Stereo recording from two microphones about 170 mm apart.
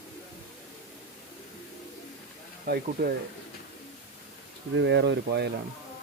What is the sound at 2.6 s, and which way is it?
Speech, 65° right (ahead or behind).